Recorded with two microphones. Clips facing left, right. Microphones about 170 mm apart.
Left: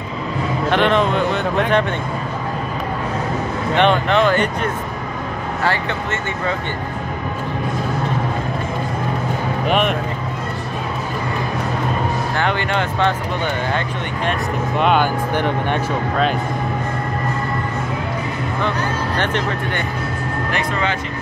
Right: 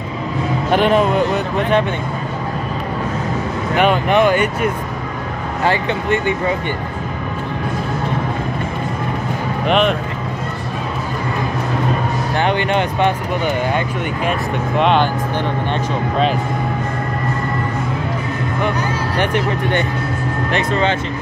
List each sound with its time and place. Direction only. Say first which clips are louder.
0.7 s speech: right 2 dB; 10° right (ahead or behind)
3.7 s speech: right 1 dB; 10° right (ahead or behind)
9.7 s speech: right 3 dB; 5° left (ahead or behind)
12.4 s speech: right 5 dB; 20° right (ahead or behind)
14.8 s speech: right 2 dB; 5° left (ahead or behind)
15.3 s speech: left 1 dB; 15° left (ahead or behind)
19.1 s speech: right 6 dB; 10° right (ahead or behind)